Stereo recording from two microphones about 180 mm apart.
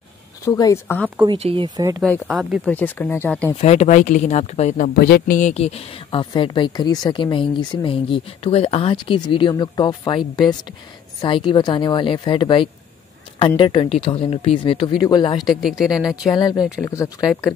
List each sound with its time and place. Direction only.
0.5 s speech: 20° left (ahead or behind)
1.2 s speech: 30° right (ahead or behind)
2.0 s speech: 5° left (ahead or behind)
3.6 s speech: 40° left (ahead or behind); by 15.4 s 25° left (ahead or behind)
15.4 s speech: centre (ahead or behind)
16.3 s speech: 20° left (ahead or behind)